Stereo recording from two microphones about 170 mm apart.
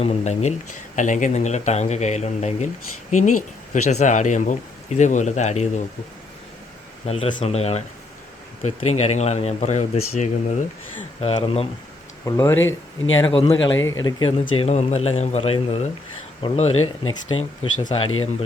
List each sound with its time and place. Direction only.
0.0 s speech: 40° left (ahead or behind)
3.8 s speech: 45° left (ahead or behind)
7.0 s speech: 35° left (ahead or behind)
11.2 s speech: 35° left (ahead or behind)
12.2 s speech: 15° left (ahead or behind)
13.2 s speech: 30° left (ahead or behind)